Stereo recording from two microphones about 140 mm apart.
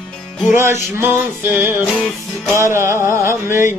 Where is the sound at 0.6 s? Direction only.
20° right (ahead or behind).